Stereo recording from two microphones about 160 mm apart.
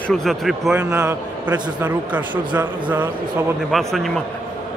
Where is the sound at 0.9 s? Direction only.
15° right (ahead or behind).